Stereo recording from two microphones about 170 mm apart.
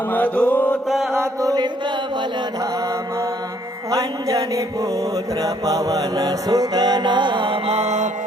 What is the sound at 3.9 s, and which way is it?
Mantra, 20° right (ahead or behind).